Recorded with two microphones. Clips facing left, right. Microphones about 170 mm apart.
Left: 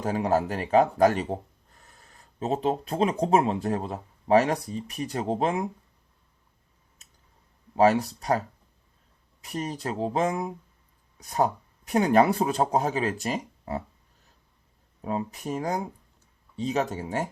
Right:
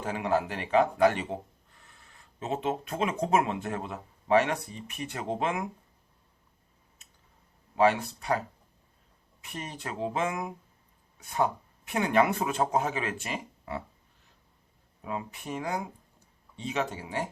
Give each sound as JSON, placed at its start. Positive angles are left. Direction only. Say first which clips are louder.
{"t": 0.0, "sound": "speech", "louder": "left 4 dB", "side_deg": 40}
{"t": 7.0, "sound": "a sound", "louder": "left 2 dB", "side_deg": 40}
{"t": 7.8, "sound": "speech", "louder": "left 4 dB", "side_deg": 40}
{"t": 15.0, "sound": "speech", "louder": "left 6 dB", "side_deg": 40}